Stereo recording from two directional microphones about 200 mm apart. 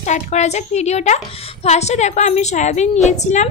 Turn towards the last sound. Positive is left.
turn(degrees=35)  # may be behind; listen again after turning